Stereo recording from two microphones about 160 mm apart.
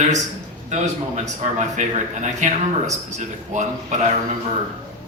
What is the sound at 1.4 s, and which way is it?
A man's voice, 50° right (ahead or behind).